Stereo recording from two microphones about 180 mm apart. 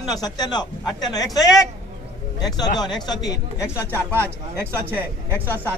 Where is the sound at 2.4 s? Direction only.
20° left (ahead or behind).